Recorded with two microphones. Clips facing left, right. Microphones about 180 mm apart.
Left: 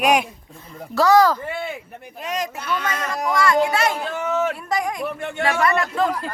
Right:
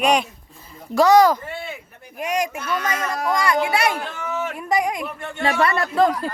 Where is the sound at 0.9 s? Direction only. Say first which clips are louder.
Right 2 dB; 20° right (ahead or behind).